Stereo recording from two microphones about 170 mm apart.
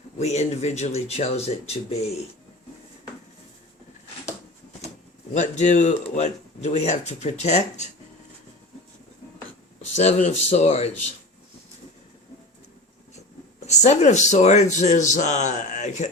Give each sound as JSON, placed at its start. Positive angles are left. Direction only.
{"t": 0.2, "sound": "speech", "side_deg": 40}
{"t": 5.3, "sound": "a man's voice", "side_deg": 45}
{"t": 9.9, "sound": "speech", "side_deg": 40}
{"t": 13.7, "sound": "a man's voice", "side_deg": 40}